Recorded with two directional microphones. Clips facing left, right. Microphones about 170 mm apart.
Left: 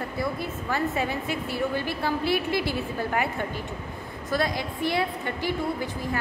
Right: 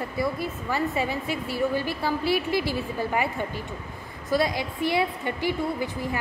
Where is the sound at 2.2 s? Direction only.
55° left (ahead or behind).